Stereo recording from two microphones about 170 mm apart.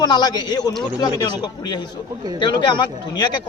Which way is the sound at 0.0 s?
25° left (ahead or behind).